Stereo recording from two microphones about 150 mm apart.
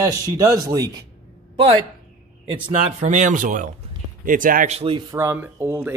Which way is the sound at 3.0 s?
55° right (ahead or behind).